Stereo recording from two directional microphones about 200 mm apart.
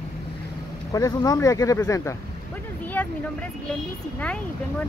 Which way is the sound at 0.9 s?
20° left (ahead or behind).